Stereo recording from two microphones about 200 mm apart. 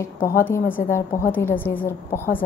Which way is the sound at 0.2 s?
45° left (ahead or behind).